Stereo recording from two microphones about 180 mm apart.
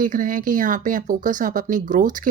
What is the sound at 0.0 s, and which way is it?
Speech, 50° right (ahead or behind).